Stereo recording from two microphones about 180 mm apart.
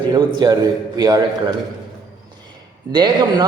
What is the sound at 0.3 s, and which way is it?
A man's voice, 20° right (ahead or behind).